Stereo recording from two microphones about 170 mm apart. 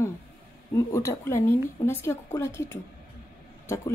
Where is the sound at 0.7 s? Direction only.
15° left (ahead or behind).